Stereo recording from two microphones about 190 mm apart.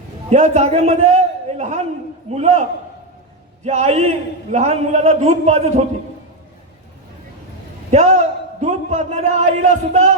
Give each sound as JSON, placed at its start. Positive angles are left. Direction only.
{"t": 0.3, "sound": "a man's voice", "side_deg": -35}
{"t": 7.9, "sound": "a man's voice", "side_deg": -35}